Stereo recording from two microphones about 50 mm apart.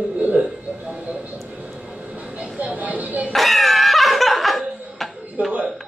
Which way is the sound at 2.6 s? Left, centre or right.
Right.